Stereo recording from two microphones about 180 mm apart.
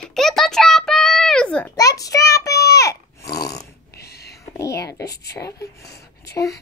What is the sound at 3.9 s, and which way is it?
Whispering, 65° left (ahead or behind).